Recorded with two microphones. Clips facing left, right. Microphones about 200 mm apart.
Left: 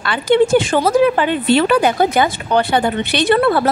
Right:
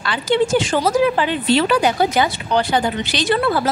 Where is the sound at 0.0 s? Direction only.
55° left (ahead or behind).